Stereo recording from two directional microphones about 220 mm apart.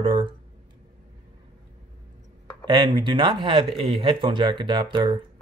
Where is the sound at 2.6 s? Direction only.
20° right (ahead or behind).